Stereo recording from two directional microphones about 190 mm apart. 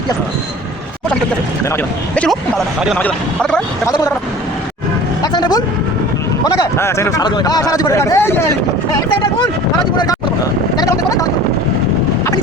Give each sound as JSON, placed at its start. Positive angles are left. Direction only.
{"t": 1.7, "sound": "speech", "side_deg": 5}
{"t": 3.8, "sound": "speech", "side_deg": 20}
{"t": 5.2, "sound": "vehicle", "side_deg": 20}
{"t": 6.4, "sound": "speech", "side_deg": 20}
{"t": 10.8, "sound": "vehicle", "side_deg": 20}